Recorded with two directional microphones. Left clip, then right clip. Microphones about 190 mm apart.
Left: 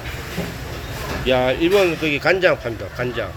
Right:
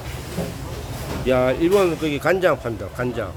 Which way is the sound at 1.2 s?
20° right (ahead or behind).